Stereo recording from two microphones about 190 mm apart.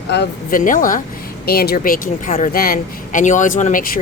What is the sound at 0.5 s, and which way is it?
Speech, 45° left (ahead or behind).